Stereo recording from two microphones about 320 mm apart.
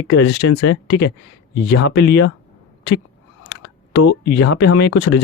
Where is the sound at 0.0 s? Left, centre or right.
Left.